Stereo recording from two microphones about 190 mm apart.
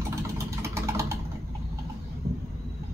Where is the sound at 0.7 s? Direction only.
15° right (ahead or behind).